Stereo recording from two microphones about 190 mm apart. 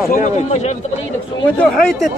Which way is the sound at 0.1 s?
40° left (ahead or behind).